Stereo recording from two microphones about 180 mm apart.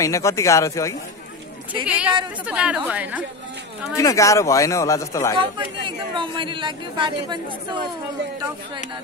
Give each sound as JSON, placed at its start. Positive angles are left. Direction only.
{"t": 0.0, "sound": "a man's voice", "side_deg": 15}
{"t": 1.9, "sound": "a woman's voice", "side_deg": -5}
{"t": 3.9, "sound": "a man's voice", "side_deg": 15}
{"t": 5.4, "sound": "speech", "side_deg": -25}